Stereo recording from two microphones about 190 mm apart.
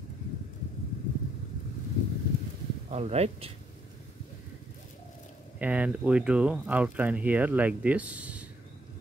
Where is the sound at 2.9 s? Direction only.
35° right (ahead or behind).